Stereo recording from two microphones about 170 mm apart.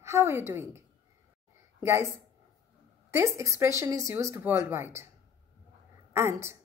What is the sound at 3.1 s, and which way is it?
Speech, 15° right (ahead or behind).